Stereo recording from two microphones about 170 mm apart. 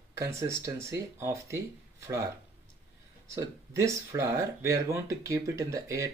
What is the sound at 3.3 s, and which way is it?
Speech, 15° right (ahead or behind).